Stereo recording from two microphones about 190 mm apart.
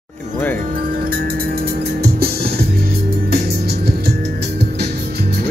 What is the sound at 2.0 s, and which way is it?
Music, 55° right (ahead or behind).